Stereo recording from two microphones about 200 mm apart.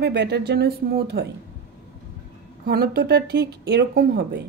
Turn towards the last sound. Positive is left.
turn(degrees=-55)  # may be behind; listen again after turning